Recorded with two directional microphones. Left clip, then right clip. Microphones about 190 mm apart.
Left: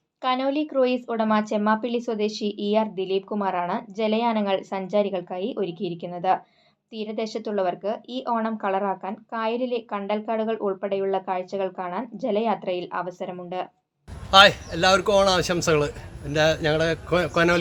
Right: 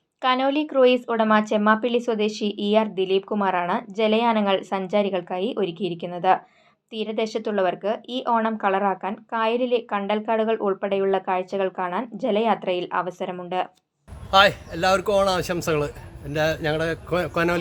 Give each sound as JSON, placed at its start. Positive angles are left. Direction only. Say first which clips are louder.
{"t": 0.2, "sound": "a woman's voice", "louder": "right 3 dB", "side_deg": -25}
{"t": 14.3, "sound": "speech", "louder": "left 2 dB", "side_deg": -5}